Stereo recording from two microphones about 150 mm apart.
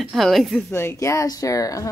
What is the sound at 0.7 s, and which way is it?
Speech, 15° left (ahead or behind).